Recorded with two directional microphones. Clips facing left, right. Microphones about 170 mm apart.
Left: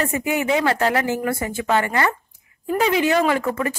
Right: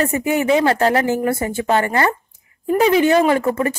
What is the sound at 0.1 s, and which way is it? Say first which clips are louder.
A woman's voice: right 4 dB; 35° right (ahead or behind).